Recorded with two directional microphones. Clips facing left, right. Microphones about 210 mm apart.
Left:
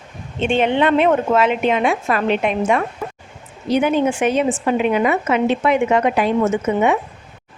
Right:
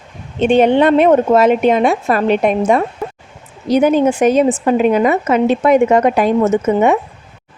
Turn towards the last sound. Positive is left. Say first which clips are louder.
# right 4 dB
turn(degrees=-40)  # may be behind; listen again after turning